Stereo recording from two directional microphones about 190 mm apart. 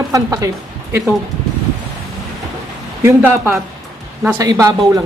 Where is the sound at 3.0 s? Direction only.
10° right (ahead or behind).